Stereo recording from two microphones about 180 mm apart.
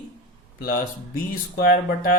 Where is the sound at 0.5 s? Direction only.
55° left (ahead or behind).